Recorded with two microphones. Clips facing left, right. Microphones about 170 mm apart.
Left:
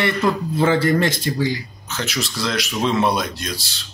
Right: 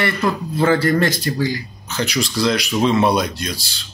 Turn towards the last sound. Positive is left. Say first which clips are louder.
# right 3 dB
turn(degrees=0)  # may be behind; listen again after turning